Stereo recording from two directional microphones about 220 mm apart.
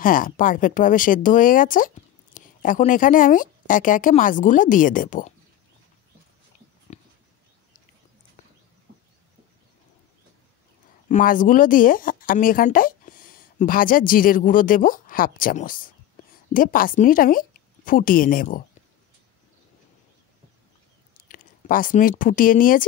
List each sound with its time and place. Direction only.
0.0 s speech: 40° left (ahead or behind)
6.9 s a sound: 30° left (ahead or behind)
11.1 s speech: 35° left (ahead or behind)
21.2 s speech: 40° left (ahead or behind)